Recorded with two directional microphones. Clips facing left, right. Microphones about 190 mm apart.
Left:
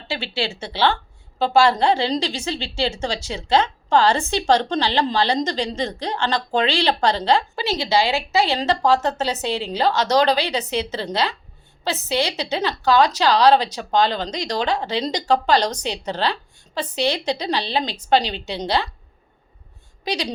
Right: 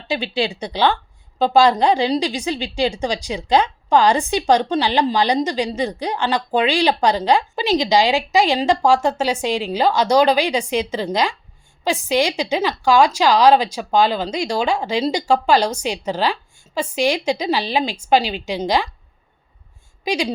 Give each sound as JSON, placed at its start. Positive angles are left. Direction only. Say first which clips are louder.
{"t": 0.1, "sound": "a woman's voice", "louder": "right 5 dB", "side_deg": -15}
{"t": 20.1, "sound": "a woman's voice", "louder": "right 4 dB", "side_deg": -10}